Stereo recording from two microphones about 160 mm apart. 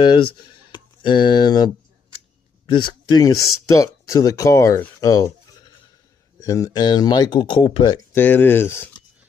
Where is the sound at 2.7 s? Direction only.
30° left (ahead or behind).